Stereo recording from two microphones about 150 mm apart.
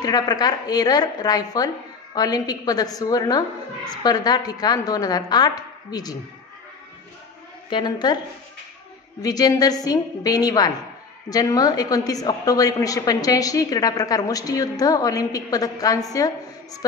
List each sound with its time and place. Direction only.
0.0 s a woman's voice: 25° left (ahead or behind)
7.7 s a woman's voice: 30° left (ahead or behind)
9.2 s a woman's voice: 25° left (ahead or behind)